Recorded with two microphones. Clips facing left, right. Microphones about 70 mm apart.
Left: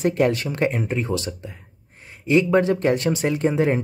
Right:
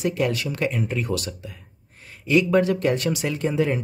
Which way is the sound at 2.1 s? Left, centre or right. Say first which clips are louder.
Left 1 dB; left.